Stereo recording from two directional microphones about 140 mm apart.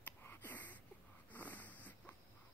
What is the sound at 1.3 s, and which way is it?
Dog, 10° left (ahead or behind).